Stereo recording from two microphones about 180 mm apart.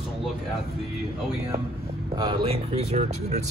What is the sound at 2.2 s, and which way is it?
Speech, 30° right (ahead or behind).